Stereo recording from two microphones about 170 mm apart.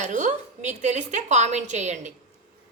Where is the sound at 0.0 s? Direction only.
45° right (ahead or behind).